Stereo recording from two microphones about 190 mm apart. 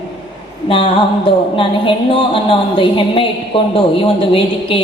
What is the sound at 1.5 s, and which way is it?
A woman's voice, 25° left (ahead or behind).